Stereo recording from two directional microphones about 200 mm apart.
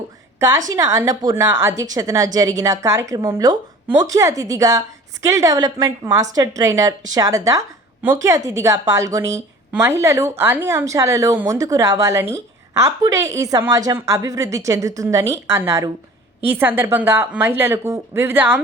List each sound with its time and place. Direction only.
0.3 s a woman's voice: 15° right (ahead or behind)